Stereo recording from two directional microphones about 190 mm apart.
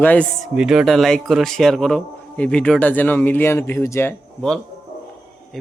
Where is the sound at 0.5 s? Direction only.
5° right (ahead or behind).